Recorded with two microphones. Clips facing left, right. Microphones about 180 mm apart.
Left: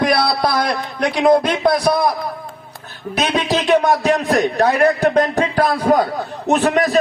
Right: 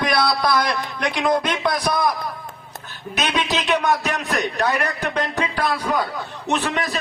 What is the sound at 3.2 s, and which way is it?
A man's voice, 30° left (ahead or behind).